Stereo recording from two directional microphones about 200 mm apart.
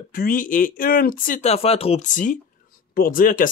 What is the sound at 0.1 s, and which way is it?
Speech, 45° left (ahead or behind).